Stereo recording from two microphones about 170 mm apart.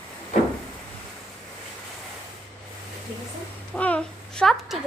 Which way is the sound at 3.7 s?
10° left (ahead or behind).